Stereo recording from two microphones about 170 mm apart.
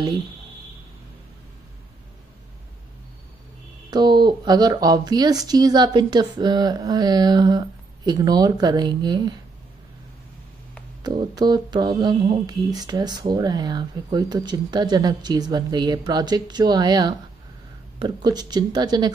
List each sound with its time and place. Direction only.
3.9 s mantra: 25° right (ahead or behind)
11.1 s mantra: 25° right (ahead or behind)